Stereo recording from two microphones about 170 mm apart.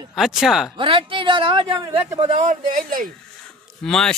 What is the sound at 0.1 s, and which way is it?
Speech, centre (ahead or behind).